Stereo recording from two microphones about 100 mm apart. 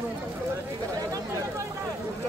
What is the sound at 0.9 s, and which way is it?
Chatter, 35° right (ahead or behind).